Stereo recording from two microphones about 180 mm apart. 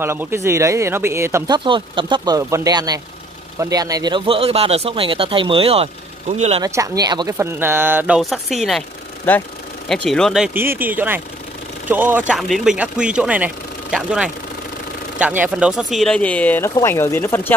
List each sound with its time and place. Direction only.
0.0 s speech: 15° right (ahead or behind)
1.6 s speech: 25° right (ahead or behind)
6.6 s speech: 20° right (ahead or behind)
8.2 s speech: centre (ahead or behind)